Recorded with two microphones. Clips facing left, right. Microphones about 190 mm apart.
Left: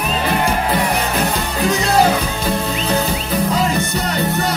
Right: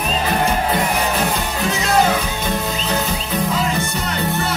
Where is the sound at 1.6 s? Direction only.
35° left (ahead or behind).